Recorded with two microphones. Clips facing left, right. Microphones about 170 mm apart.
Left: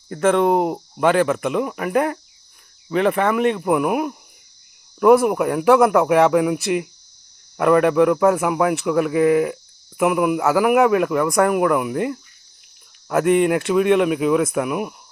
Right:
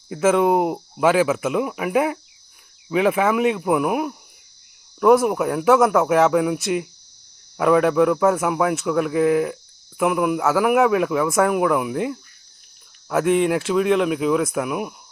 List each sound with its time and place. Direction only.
0.1 s speech: 5° right (ahead or behind)